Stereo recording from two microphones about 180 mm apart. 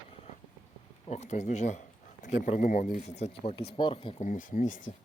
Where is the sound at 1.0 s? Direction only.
35° left (ahead or behind).